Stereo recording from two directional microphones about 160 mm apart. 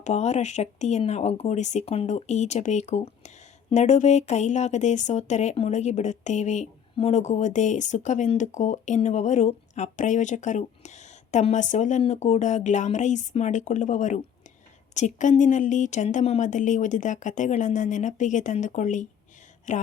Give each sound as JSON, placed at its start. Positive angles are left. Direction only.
{"t": 0.0, "sound": "speech", "side_deg": 45}